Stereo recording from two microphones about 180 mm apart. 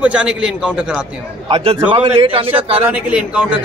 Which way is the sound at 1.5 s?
30° right (ahead or behind).